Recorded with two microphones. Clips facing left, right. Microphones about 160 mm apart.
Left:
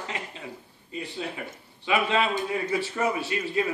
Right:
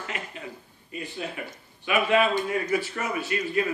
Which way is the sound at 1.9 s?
30° left (ahead or behind).